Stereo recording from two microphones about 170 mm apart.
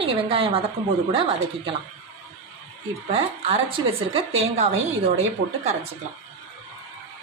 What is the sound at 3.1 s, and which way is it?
A woman's voice, 35° right (ahead or behind).